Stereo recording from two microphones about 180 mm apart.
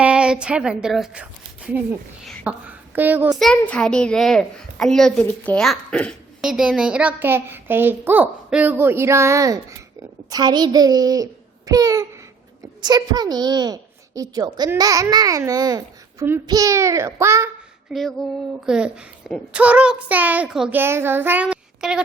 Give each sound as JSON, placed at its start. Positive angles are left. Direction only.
{"t": 0.0, "sound": "a woman's voice", "side_deg": -5}
{"t": 3.3, "sound": "a child's voice", "side_deg": 5}